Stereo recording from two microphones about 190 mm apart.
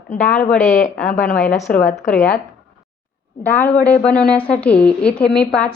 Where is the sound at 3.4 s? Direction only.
10° left (ahead or behind).